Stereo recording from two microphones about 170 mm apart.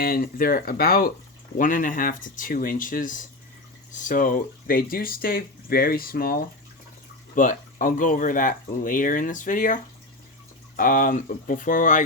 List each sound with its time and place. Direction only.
0.0 s speech: 55° left (ahead or behind)